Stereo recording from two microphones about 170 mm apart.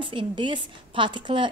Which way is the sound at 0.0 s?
30° right (ahead or behind).